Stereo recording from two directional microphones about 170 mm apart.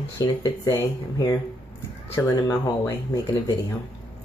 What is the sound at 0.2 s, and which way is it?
Speech, 20° left (ahead or behind).